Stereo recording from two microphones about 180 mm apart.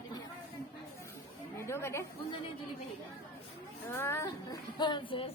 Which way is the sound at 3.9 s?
15° left (ahead or behind).